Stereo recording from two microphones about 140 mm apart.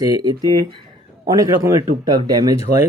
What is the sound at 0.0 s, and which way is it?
Speech, 25° right (ahead or behind).